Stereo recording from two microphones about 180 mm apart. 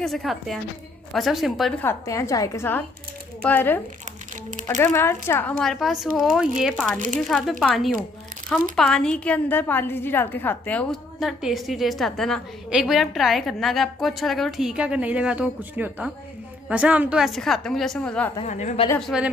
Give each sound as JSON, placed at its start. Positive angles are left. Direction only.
{"t": 0.0, "sound": "a woman's voice", "side_deg": 0}
{"t": 1.8, "sound": "a woman's voice", "side_deg": 15}
{"t": 18.4, "sound": "a woman's voice", "side_deg": 40}
{"t": 18.9, "sound": "a woman's voice", "side_deg": 0}